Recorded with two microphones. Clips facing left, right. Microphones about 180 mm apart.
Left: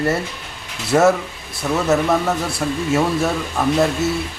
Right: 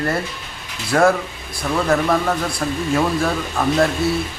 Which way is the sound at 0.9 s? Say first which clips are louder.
Left 1 dB; 15° left (ahead or behind).